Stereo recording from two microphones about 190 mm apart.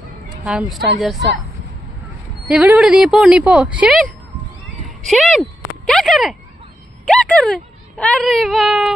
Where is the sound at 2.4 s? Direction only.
5° right (ahead or behind).